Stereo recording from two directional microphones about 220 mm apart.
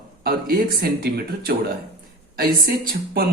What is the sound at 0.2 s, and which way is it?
A man's voice, 45° right (ahead or behind).